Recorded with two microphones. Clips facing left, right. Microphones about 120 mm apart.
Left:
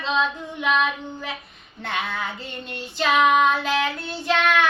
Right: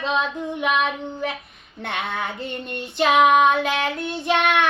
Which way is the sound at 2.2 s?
55° right (ahead or behind).